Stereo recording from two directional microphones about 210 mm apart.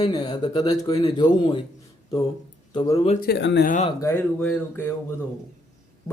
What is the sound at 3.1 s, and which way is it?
Speech, 45° left (ahead or behind).